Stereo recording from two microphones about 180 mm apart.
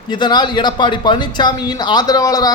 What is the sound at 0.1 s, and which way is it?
Speech, 25° left (ahead or behind).